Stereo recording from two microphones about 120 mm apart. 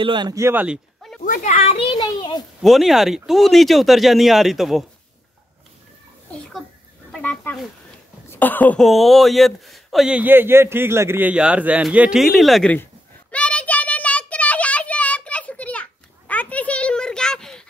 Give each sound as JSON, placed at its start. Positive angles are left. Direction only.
{"t": 0.0, "sound": "speech", "side_deg": -40}
{"t": 0.3, "sound": "speech", "side_deg": -20}
{"t": 0.7, "sound": "a sound", "side_deg": 0}
{"t": 1.4, "sound": "a child's voice", "side_deg": 70}
{"t": 2.6, "sound": "speech", "side_deg": 0}
{"t": 7.1, "sound": "a sound", "side_deg": 10}
{"t": 8.3, "sound": "speech", "side_deg": 15}
{"t": 8.7, "sound": "speech", "side_deg": 0}
{"t": 13.3, "sound": "child singing", "side_deg": 10}